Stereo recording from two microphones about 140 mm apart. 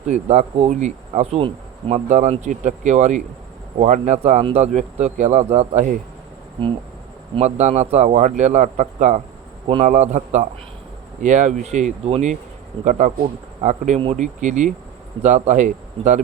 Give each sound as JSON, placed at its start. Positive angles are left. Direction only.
{"t": 0.1, "sound": "speech", "side_deg": -55}
{"t": 2.0, "sound": "speech", "side_deg": -60}
{"t": 7.3, "sound": "speech", "side_deg": -55}